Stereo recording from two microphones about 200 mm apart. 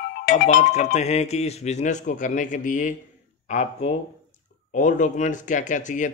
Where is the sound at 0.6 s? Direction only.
35° left (ahead or behind).